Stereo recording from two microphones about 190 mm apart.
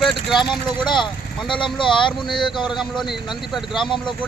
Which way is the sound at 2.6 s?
Centre (ahead or behind).